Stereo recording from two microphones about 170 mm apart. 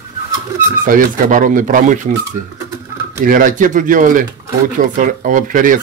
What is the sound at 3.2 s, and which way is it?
Speech, 50° right (ahead or behind).